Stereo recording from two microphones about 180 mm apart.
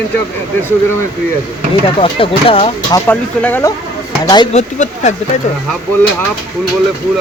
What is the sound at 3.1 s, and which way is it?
Speech, 10° left (ahead or behind).